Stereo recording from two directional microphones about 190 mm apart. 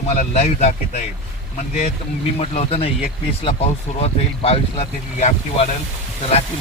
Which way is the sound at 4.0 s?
30° left (ahead or behind).